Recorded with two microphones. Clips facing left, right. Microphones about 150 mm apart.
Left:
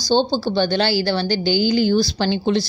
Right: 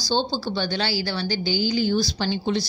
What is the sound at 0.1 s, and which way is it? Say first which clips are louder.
A woman's voice: left 7 dB; 65° left (ahead or behind).